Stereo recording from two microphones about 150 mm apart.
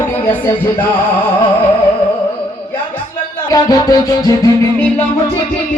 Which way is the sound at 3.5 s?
25° left (ahead or behind).